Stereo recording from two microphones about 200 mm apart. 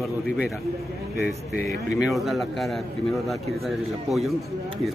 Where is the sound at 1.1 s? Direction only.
55° left (ahead or behind).